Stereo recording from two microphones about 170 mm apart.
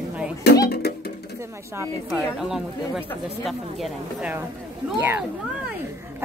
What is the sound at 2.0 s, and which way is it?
Speech, 5° right (ahead or behind).